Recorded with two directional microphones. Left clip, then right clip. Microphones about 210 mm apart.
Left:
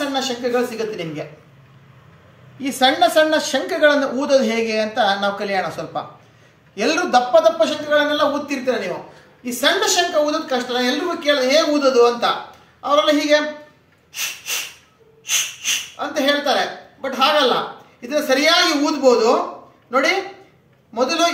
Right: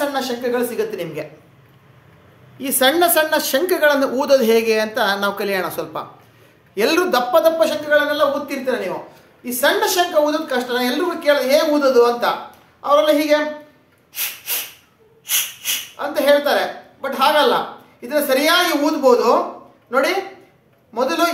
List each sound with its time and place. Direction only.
0.1 s speech: 25° right (ahead or behind)
2.6 s a woman's voice: 45° right (ahead or behind); by 7.7 s 30° right (ahead or behind)
7.9 s a woman's voice: 15° right (ahead or behind)
15.2 s snort: 15° right (ahead or behind)
17.0 s a woman's voice: 15° right (ahead or behind)
20.9 s a woman's voice: 15° right (ahead or behind)